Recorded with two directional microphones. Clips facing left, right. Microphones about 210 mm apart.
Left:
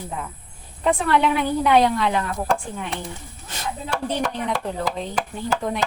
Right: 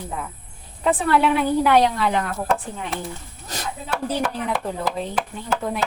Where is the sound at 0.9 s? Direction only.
5° right (ahead or behind).